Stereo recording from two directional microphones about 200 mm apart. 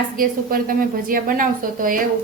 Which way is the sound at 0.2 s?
45° right (ahead or behind).